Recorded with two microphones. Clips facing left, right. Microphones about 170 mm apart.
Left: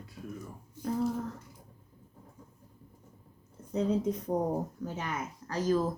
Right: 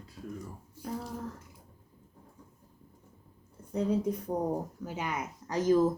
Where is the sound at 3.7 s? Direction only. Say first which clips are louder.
Even; 10° right (ahead or behind).